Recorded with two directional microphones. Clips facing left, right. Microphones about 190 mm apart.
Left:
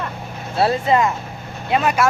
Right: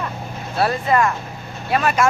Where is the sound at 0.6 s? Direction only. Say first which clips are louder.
Left 1 dB; 20° left (ahead or behind).